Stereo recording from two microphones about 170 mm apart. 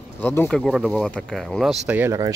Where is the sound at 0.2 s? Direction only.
10° left (ahead or behind); by 2.1 s 10° right (ahead or behind).